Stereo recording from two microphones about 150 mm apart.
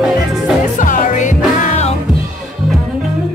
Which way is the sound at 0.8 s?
60° left (ahead or behind).